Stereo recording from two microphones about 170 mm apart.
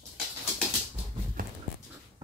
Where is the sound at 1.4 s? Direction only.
55° right (ahead or behind).